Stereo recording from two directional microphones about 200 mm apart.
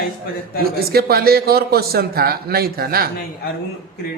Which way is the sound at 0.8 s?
50° right (ahead or behind).